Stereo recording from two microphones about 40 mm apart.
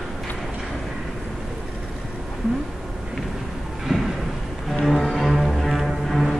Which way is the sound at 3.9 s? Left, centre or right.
Centre.